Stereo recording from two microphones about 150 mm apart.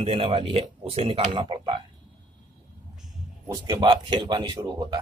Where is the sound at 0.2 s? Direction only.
35° right (ahead or behind).